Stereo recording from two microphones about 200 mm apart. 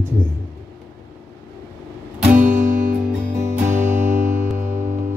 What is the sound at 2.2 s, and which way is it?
Music, 10° right (ahead or behind).